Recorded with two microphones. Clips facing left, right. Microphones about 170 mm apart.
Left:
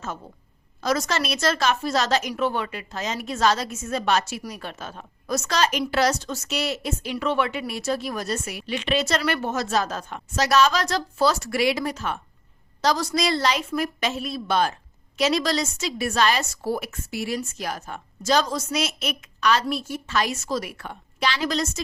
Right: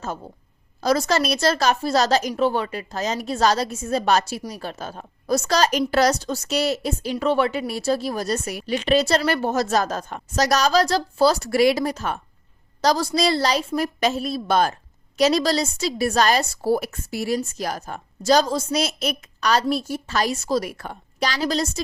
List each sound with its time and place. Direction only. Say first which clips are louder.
0.8 s a woman's voice: right 4 dB; 35° right (ahead or behind)